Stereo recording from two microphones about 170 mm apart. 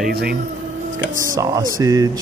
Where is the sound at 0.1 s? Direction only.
65° right (ahead or behind).